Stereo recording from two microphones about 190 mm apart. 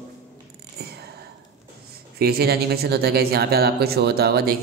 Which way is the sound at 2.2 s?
55° right (ahead or behind).